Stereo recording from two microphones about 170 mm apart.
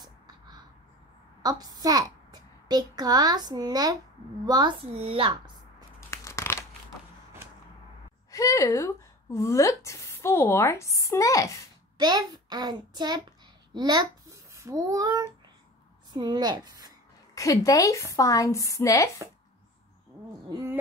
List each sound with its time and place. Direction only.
0.0 s a sound: 25° right (ahead or behind)
1.4 s a child's voice: 20° right (ahead or behind)
5.9 s crumpling: 15° left (ahead or behind)
8.3 s speech: 20° left (ahead or behind)
12.0 s a child's voice: 25° right (ahead or behind)
17.4 s a woman's voice: 20° left (ahead or behind)